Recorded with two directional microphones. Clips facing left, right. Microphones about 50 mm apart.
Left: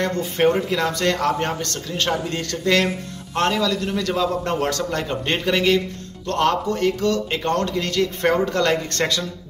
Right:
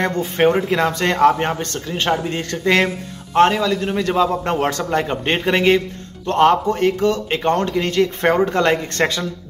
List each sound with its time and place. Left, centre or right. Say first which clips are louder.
0.0 s a man's voice: right 3 dB; right